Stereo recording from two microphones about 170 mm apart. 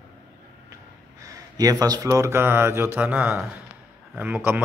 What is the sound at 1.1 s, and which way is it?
A man's voice, 20° right (ahead or behind).